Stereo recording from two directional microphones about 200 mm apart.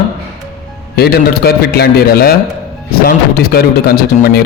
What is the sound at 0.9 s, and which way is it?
Speech, 50° left (ahead or behind).